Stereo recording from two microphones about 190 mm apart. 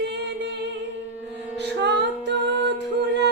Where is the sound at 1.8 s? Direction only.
65° right (ahead or behind).